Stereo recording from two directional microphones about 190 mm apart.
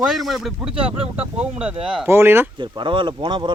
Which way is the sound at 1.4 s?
5° right (ahead or behind).